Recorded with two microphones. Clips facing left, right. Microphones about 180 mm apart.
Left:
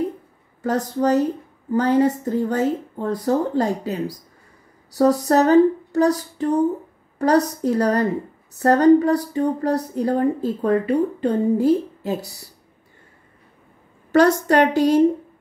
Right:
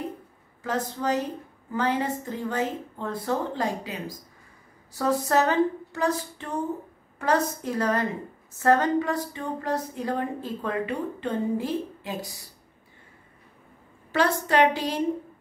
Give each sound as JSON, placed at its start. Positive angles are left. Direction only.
{"t": 0.7, "sound": "a woman's voice", "side_deg": 45}
{"t": 14.1, "sound": "a woman's voice", "side_deg": 45}